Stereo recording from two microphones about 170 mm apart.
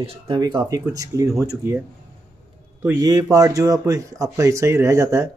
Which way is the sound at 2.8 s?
20° right (ahead or behind).